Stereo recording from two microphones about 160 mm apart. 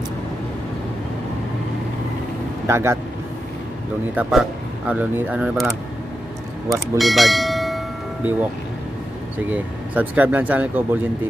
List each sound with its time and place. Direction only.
2.6 s speech: 15° right (ahead or behind)
4.1 s speech: 5° right (ahead or behind)
6.7 s bell: centre (ahead or behind)
9.5 s speech: 10° right (ahead or behind)